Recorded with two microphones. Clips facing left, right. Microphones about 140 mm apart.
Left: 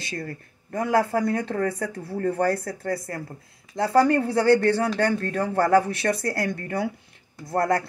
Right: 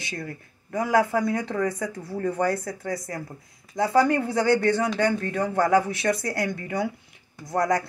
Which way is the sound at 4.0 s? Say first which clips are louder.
Left 2 dB; 30° left (ahead or behind).